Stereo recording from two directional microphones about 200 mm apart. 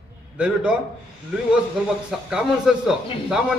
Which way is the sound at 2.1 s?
5° right (ahead or behind).